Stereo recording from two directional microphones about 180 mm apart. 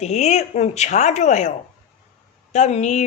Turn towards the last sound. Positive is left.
turn(degrees=40)  # may be behind; listen again after turning